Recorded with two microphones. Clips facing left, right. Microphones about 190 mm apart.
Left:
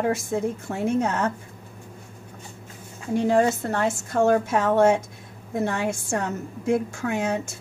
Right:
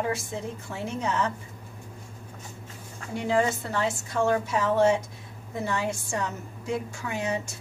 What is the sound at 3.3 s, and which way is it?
A woman's voice, 45° left (ahead or behind).